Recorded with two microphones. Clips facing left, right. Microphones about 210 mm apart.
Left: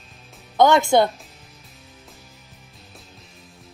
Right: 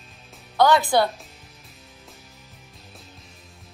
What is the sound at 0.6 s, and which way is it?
Speech, 20° left (ahead or behind).